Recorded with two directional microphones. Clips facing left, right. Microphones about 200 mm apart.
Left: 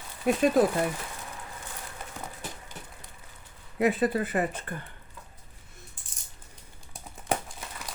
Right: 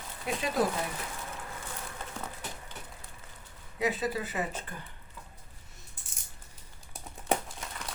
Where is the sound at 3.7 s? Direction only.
55° left (ahead or behind).